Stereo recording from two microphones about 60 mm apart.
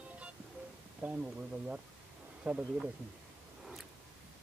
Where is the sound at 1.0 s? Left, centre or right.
Right.